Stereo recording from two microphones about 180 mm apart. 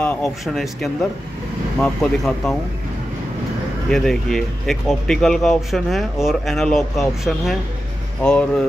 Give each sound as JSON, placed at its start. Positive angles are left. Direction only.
{"t": 0.0, "sound": "speech", "side_deg": 5}
{"t": 3.9, "sound": "speech", "side_deg": 0}